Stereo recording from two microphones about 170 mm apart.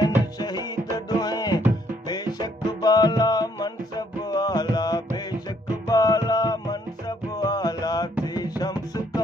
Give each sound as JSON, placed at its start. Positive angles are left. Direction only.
{"t": 0.9, "sound": "music", "side_deg": 25}